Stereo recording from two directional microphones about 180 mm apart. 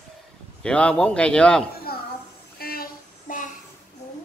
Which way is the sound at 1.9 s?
55° left (ahead or behind).